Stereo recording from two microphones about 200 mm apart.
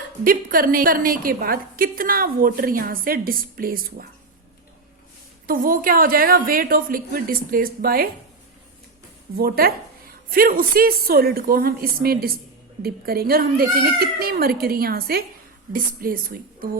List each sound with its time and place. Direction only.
0.3 s a woman's voice: 45° right (ahead or behind)
5.5 s a woman's voice: 45° right (ahead or behind)
9.4 s a woman's voice: 50° right (ahead or behind)